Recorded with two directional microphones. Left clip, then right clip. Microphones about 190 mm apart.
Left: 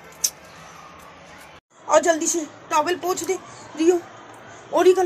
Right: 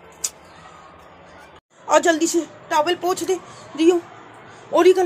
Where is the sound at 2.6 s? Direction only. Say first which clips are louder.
Right 1 dB; 20° right (ahead or behind).